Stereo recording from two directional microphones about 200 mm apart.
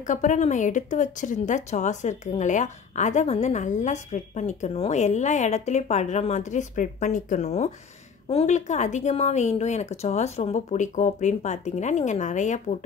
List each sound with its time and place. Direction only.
0.0 s speech: 40° left (ahead or behind)